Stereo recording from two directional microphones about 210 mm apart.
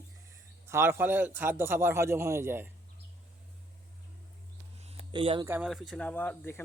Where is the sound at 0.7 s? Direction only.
10° right (ahead or behind).